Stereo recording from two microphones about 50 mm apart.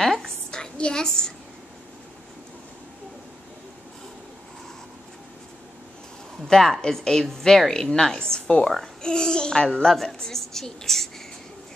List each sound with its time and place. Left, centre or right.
0.0 s a sound: centre
0.6 s a woman's voice: centre
6.4 s a woman's voice: centre